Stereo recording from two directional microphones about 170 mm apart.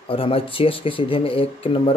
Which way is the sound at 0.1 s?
30° left (ahead or behind).